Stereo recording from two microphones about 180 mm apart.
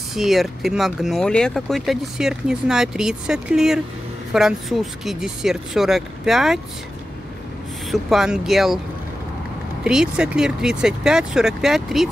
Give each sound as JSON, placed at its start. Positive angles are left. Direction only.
{"t": 0.1, "sound": "speech", "side_deg": 0}
{"t": 7.9, "sound": "speech", "side_deg": 0}
{"t": 9.8, "sound": "speech", "side_deg": -5}